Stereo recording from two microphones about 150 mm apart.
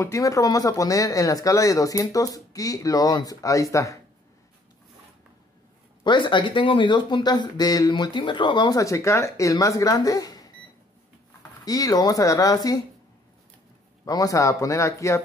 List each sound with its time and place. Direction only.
0.0 s speech: 20° left (ahead or behind)
6.0 s speech: 30° left (ahead or behind)
11.6 s speech: 25° left (ahead or behind)
14.0 s speech: 25° left (ahead or behind)